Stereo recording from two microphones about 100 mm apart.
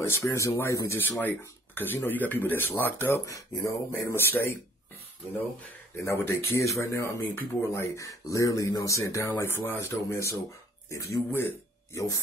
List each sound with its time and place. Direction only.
0.0 s speech: 30° left (ahead or behind)
5.9 s speech: 25° left (ahead or behind)